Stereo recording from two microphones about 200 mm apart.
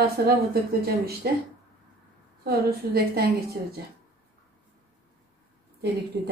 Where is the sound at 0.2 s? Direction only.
50° right (ahead or behind).